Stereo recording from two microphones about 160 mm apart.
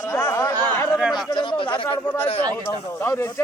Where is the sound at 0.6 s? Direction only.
10° left (ahead or behind).